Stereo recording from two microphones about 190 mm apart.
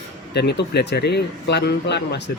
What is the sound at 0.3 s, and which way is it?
Speech, 60° left (ahead or behind).